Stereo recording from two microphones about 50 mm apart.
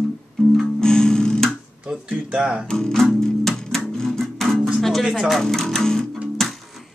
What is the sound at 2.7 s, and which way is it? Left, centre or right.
Music, centre.